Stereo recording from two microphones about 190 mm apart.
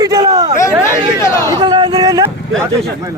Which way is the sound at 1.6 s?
25° right (ahead or behind).